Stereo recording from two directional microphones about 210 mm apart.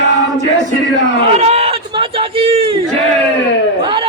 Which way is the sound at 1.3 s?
30° right (ahead or behind).